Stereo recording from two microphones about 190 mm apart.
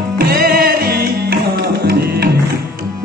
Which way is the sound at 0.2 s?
55° right (ahead or behind).